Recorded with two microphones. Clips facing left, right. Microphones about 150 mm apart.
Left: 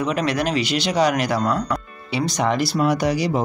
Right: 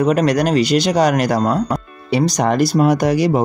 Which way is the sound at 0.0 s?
45° right (ahead or behind).